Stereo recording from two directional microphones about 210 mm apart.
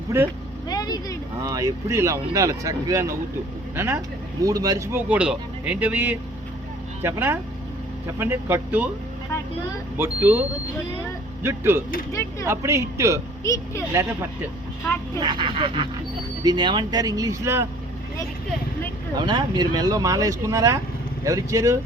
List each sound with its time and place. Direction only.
0.7 s speech: 20° left (ahead or behind)
1.4 s speech: 15° right (ahead or behind)
10.0 s speech: 10° right (ahead or behind)
11.4 s speech: 10° right (ahead or behind)
13.4 s speech: 15° left (ahead or behind)
13.9 s speech: 15° right (ahead or behind)
19.1 s speech: 20° right (ahead or behind)